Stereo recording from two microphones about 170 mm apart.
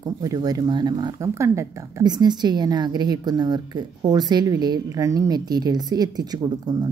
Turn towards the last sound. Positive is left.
turn(degrees=-25)  # may be behind; listen again after turning